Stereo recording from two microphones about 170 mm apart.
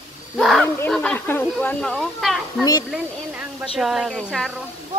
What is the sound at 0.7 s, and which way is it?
Snake, 5° left (ahead or behind).